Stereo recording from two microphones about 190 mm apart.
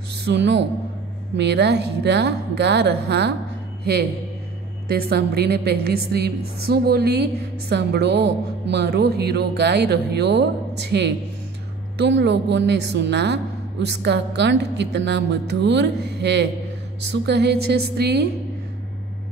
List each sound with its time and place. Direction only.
0.1 s a man's voice: 65° right (ahead or behind)
4.8 s a woman's voice: 60° right (ahead or behind)